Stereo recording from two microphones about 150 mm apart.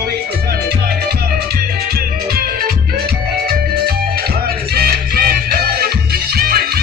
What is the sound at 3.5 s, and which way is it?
Music, 90° right.